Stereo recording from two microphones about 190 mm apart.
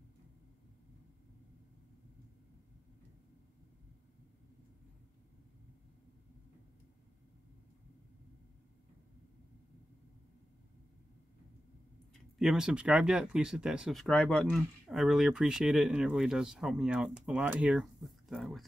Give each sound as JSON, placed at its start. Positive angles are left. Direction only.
{"t": 12.4, "sound": "speech", "side_deg": -5}